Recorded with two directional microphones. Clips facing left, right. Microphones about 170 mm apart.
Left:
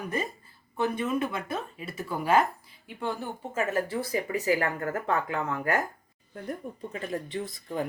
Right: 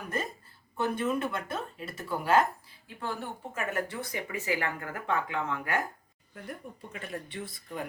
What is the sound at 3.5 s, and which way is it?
Speech, 25° left (ahead or behind).